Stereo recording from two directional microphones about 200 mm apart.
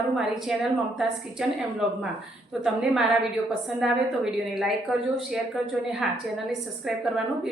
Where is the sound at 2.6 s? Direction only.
5° right (ahead or behind).